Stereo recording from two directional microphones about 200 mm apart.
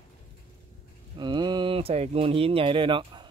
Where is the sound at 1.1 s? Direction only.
20° right (ahead or behind).